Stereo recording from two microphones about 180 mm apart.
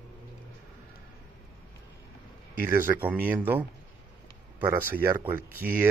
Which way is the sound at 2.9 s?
10° right (ahead or behind).